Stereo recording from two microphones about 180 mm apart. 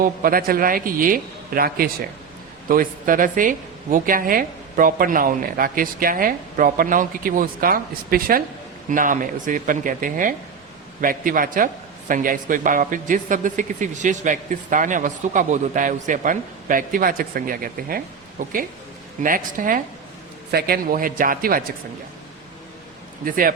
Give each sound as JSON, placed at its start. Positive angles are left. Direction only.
{"t": 0.0, "sound": "a man's voice", "side_deg": -50}
{"t": 23.2, "sound": "a man's voice", "side_deg": -50}